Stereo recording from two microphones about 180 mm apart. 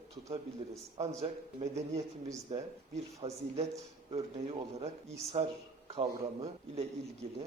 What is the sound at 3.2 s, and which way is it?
Speech, 25° right (ahead or behind).